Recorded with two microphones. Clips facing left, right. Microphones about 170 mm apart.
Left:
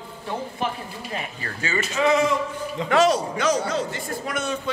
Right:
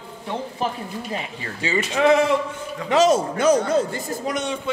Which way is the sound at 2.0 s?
60° right (ahead or behind).